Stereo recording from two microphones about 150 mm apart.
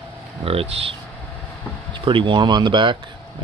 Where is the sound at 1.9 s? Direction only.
35° right (ahead or behind).